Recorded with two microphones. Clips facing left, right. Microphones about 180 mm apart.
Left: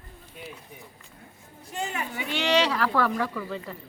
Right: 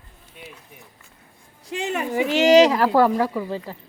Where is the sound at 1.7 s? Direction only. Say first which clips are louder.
Right 7 dB; 90° right.